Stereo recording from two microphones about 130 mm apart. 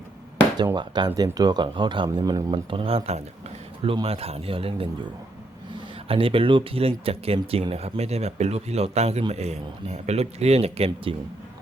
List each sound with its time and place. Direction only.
0.8 s speech: 35° right (ahead or behind)
6.1 s speech: 45° right (ahead or behind)